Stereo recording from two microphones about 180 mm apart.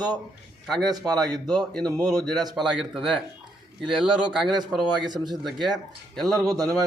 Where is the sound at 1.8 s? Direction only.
20° right (ahead or behind).